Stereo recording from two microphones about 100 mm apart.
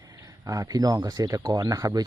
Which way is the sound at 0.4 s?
35° right (ahead or behind).